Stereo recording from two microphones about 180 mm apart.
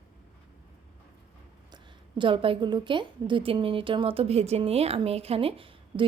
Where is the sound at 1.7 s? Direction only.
25° right (ahead or behind).